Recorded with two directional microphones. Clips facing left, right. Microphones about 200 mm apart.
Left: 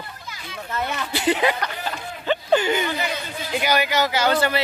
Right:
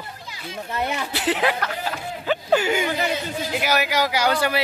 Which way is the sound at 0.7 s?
15° right (ahead or behind).